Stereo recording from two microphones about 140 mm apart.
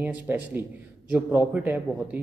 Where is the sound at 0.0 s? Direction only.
15° right (ahead or behind).